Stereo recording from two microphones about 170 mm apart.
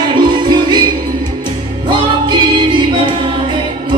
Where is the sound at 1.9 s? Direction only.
25° right (ahead or behind).